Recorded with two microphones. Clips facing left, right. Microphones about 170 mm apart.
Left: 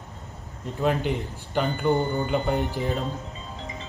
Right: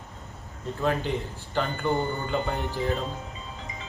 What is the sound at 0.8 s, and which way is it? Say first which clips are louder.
A man's voice: left 2 dB; 15° left (ahead or behind).